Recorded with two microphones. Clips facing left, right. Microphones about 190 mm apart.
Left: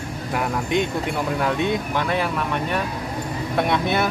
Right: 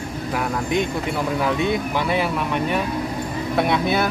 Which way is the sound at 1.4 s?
5° right (ahead or behind).